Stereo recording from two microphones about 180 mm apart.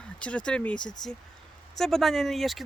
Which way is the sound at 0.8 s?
25° left (ahead or behind).